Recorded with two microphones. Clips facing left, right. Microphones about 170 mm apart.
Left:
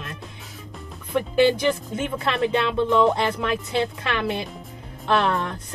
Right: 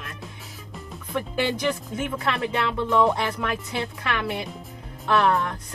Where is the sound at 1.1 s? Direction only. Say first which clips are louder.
Left 7 dB; 20° left (ahead or behind).